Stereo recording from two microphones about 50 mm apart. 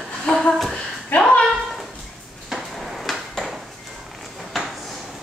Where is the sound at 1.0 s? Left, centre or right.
Left.